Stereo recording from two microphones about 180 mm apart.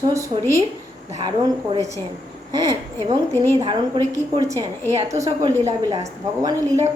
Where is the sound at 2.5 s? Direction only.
20° right (ahead or behind).